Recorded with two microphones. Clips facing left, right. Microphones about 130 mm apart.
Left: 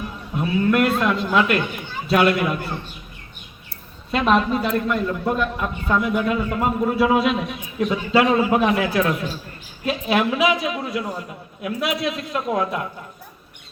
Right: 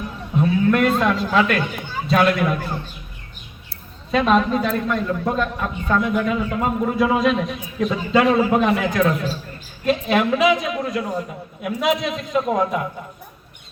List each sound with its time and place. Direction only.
0.3 s a sound: 5° left (ahead or behind)
0.9 s a man's voice: centre (ahead or behind)
4.1 s a man's voice: 5° left (ahead or behind)